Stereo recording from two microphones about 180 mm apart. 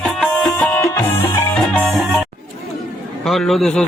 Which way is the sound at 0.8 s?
15° left (ahead or behind).